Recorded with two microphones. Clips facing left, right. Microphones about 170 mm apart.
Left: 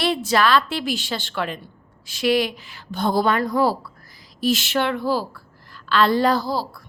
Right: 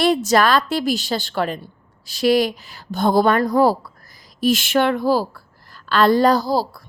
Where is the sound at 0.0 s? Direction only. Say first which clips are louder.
Right 4 dB; 45° right (ahead or behind).